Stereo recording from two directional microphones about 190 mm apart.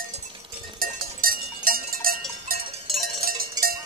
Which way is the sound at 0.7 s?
50° right (ahead or behind).